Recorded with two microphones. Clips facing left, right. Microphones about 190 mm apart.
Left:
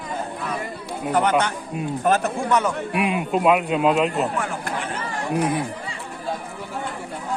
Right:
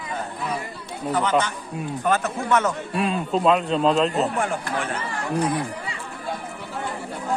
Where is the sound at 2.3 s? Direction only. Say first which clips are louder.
Left 1 dB; 25° left (ahead or behind).